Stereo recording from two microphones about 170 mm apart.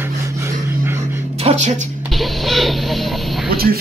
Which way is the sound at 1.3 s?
40° right (ahead or behind).